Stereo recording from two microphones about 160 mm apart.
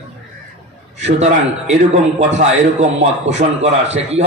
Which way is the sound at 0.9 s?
45° right (ahead or behind).